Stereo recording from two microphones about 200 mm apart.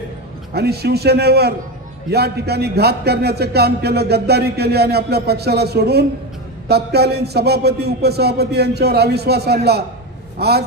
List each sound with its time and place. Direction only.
0.5 s a man's voice: 55° right (ahead or behind)